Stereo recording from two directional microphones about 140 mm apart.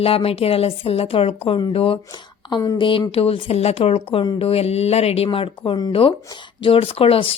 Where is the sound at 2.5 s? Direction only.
30° left (ahead or behind).